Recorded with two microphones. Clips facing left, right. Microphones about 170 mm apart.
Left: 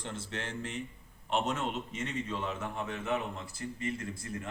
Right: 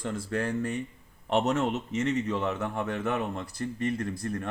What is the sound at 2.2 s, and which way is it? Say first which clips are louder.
A man's voice: right 7 dB; 75° right (ahead or behind).